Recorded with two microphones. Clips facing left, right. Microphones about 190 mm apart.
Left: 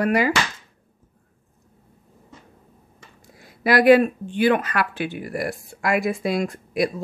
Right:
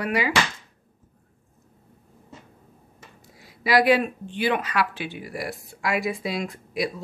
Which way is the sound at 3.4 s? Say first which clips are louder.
Left 3 dB; 55° left (ahead or behind).